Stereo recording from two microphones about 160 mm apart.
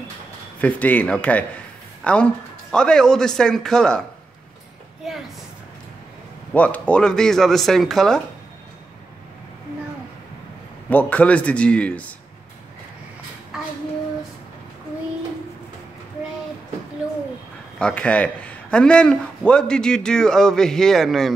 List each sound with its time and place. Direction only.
0.6 s a man's voice: 10° left (ahead or behind)
5.0 s a sound: centre (ahead or behind)
6.5 s a man's voice: 10° left (ahead or behind)
10.9 s a man's voice: 10° left (ahead or behind)
17.7 s a man's voice: 5° left (ahead or behind)